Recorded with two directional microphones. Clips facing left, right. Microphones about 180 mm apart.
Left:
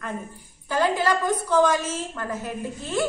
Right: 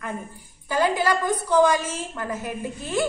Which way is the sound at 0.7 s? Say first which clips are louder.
Even; 10° right (ahead or behind).